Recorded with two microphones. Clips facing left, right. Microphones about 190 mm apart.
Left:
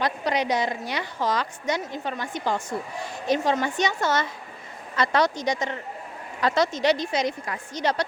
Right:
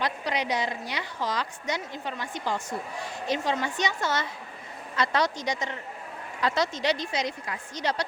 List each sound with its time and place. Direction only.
0.0 s a woman's voice: 45° left (ahead or behind)